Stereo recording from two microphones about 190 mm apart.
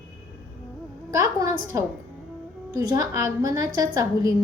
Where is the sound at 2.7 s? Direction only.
15° right (ahead or behind).